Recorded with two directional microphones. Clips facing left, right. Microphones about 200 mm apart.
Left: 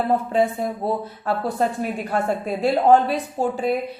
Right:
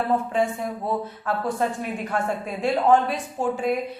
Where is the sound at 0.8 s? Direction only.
35° left (ahead or behind).